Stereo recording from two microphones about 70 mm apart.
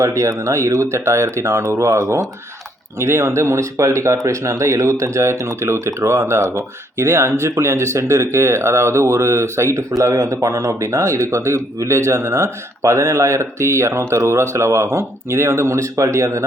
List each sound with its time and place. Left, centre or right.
0.0 s speech: right